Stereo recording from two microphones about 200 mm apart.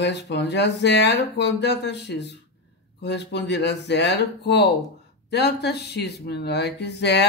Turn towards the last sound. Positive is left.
turn(degrees=60)  # may be behind; listen again after turning